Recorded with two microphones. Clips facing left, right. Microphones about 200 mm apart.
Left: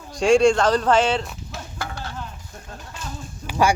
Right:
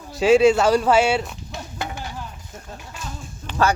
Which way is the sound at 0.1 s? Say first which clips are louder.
Right 1 dB; 5° right (ahead or behind).